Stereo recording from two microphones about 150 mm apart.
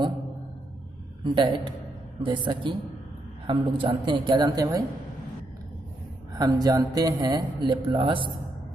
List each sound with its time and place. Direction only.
1.2 s a woman's voice: 30° right (ahead or behind)
6.3 s speech: 25° right (ahead or behind)